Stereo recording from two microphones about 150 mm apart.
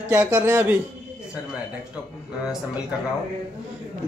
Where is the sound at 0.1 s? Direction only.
15° right (ahead or behind).